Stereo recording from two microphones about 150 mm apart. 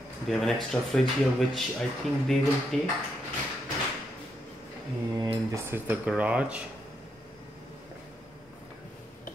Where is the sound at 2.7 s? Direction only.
Centre (ahead or behind).